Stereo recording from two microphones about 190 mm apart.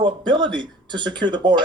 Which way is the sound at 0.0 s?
25° right (ahead or behind).